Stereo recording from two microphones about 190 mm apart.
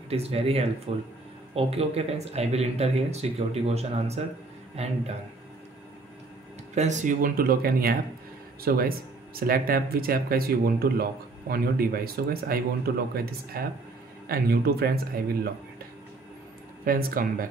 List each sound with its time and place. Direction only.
0.1 s speech: 30° right (ahead or behind)
6.7 s speech: 40° right (ahead or behind); by 14.9 s 55° right (ahead or behind)
16.8 s speech: 50° right (ahead or behind)